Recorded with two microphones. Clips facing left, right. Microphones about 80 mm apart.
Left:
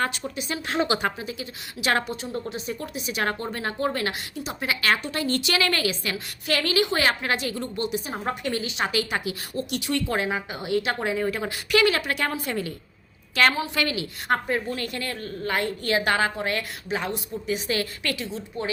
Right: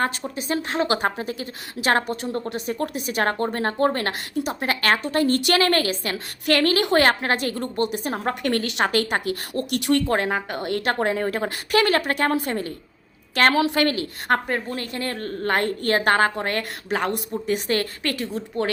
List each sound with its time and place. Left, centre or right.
0.0 s a woman's voice: right
2.3 s a woman's voice: right
6.4 s a woman's voice: right
13.5 s a woman's voice: right
13.7 s a woman's voice: right
14.8 s a woman's voice: right
18.3 s a woman's voice: right